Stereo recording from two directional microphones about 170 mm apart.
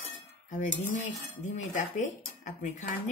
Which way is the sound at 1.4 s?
45° left (ahead or behind).